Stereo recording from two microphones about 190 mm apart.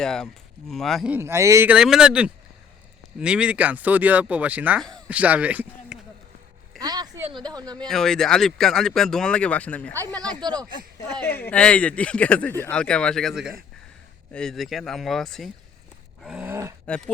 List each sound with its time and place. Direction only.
0.0 s a man's voice: 5° left (ahead or behind)
6.7 s a sound: 20° right (ahead or behind)
7.3 s speech: 25° right (ahead or behind)
7.8 s speech: centre (ahead or behind)
10.4 s speech: 20° right (ahead or behind)
11.2 s speech: 10° left (ahead or behind)
16.2 s a sound: 10° right (ahead or behind)